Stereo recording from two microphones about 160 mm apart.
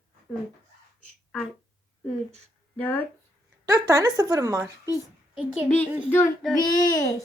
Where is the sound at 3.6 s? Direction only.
25° right (ahead or behind).